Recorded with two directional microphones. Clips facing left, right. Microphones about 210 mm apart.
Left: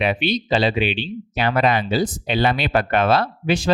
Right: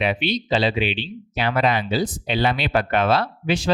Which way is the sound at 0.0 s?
50° left (ahead or behind).